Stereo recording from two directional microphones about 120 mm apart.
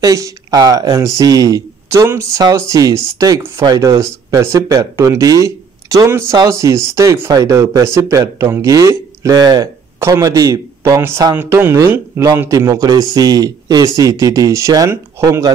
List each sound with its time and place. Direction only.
0.0 s speech: 30° right (ahead or behind)
9.9 s speech: 25° right (ahead or behind)